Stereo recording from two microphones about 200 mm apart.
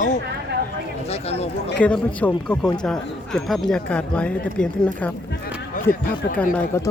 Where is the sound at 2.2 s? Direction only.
10° left (ahead or behind).